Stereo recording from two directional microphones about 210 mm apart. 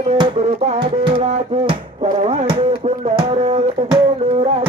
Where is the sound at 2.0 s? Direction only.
35° right (ahead or behind).